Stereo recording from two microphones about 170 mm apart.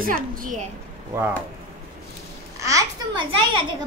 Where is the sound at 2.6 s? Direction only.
20° right (ahead or behind).